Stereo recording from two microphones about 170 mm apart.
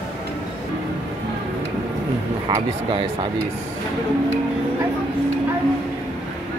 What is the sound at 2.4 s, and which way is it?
Speech, 25° right (ahead or behind).